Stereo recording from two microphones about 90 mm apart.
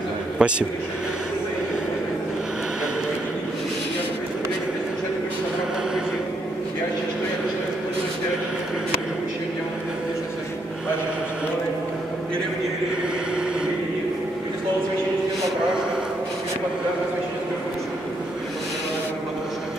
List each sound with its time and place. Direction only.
0.4 s a man's voice: 10° right (ahead or behind)